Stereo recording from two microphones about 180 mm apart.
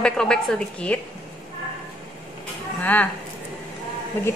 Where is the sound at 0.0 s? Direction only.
5° left (ahead or behind).